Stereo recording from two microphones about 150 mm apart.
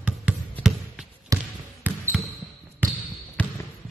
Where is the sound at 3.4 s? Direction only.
10° left (ahead or behind).